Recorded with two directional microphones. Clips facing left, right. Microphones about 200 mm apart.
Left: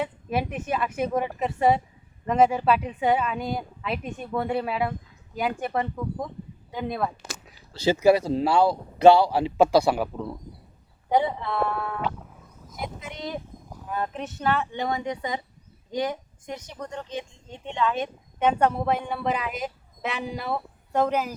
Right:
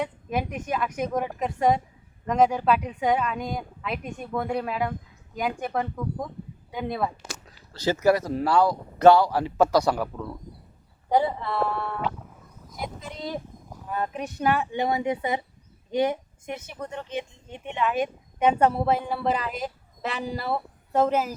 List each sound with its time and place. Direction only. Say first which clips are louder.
0.0 s speech: left 1 dB; 5° left (ahead or behind)
8.0 s speech: left 2 dB; 25° left (ahead or behind)
11.1 s a woman's voice: even; centre (ahead or behind)